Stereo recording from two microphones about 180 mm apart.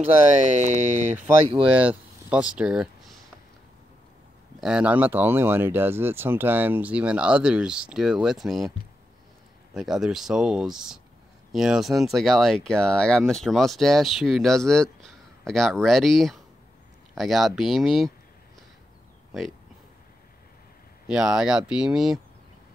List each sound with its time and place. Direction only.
0.6 s speech: 40° right (ahead or behind)
1.7 s speech: 10° right (ahead or behind)
4.6 s speech: 5° right (ahead or behind)
9.8 s speech: centre (ahead or behind)
21.1 s speech: 5° right (ahead or behind)